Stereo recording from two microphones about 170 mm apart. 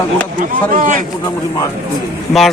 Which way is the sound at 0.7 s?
50° right (ahead or behind).